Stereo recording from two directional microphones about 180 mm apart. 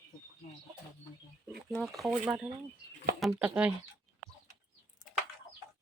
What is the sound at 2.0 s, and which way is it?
Speech, centre (ahead or behind).